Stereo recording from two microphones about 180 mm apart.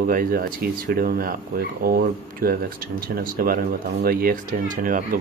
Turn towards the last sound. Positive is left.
turn(degrees=-50)  # may be behind; listen again after turning